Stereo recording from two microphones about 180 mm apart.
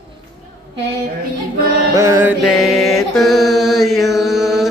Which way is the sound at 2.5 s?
Centre (ahead or behind).